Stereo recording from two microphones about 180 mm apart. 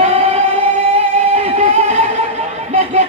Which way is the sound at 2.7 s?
40° right (ahead or behind).